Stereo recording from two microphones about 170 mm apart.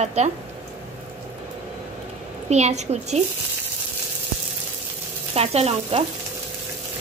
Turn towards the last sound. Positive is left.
turn(degrees=-35)  # may be behind; listen again after turning